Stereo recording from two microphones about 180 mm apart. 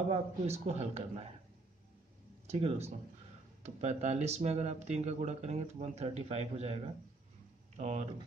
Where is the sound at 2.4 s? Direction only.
35° right (ahead or behind).